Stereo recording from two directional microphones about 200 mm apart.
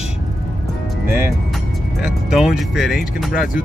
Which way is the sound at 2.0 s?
Centre (ahead or behind).